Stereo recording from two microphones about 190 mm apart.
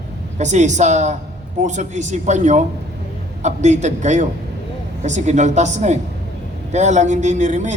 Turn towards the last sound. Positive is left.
turn(degrees=-40)  # may be behind; listen again after turning